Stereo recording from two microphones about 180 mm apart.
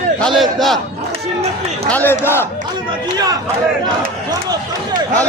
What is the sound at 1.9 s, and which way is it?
Speech, 10° left (ahead or behind).